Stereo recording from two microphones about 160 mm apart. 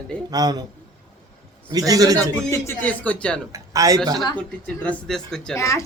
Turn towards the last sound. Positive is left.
turn(degrees=20)  # may be behind; listen again after turning